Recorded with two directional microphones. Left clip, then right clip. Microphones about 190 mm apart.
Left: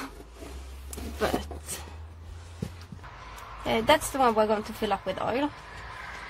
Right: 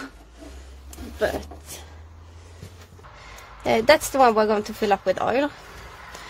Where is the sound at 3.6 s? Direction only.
55° right (ahead or behind).